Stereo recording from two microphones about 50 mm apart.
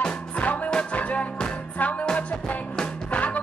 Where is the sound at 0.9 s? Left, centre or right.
Left.